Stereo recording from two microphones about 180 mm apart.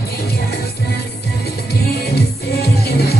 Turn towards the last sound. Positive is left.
turn(degrees=60)  # may be behind; listen again after turning